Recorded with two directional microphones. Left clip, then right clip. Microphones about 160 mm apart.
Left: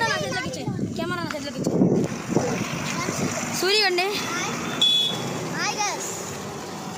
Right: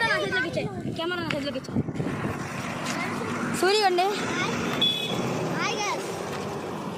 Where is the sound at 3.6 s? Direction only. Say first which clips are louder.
Even; 5° left (ahead or behind).